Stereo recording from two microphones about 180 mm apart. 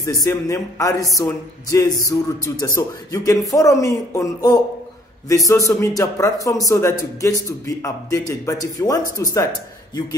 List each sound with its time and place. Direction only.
0.0 s speech: 15° left (ahead or behind)